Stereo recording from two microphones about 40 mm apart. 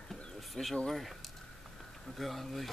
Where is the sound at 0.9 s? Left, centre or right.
Centre.